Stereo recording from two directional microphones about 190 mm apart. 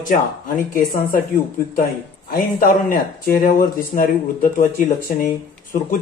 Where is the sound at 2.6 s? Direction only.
50° left (ahead or behind).